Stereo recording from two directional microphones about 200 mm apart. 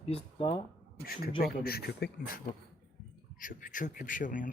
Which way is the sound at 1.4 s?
50° left (ahead or behind).